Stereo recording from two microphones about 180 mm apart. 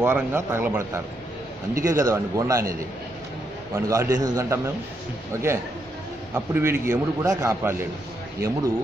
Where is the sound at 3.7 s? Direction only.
15° right (ahead or behind).